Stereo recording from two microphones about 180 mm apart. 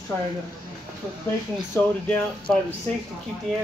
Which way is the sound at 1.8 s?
10° left (ahead or behind).